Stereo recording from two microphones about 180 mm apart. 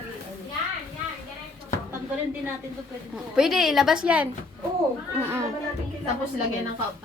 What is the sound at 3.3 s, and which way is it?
A woman's voice, 5° right (ahead or behind).